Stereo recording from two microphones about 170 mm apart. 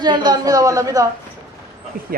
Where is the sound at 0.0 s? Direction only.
25° right (ahead or behind).